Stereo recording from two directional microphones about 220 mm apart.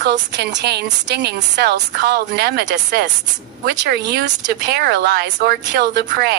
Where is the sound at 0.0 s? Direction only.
50° right (ahead or behind).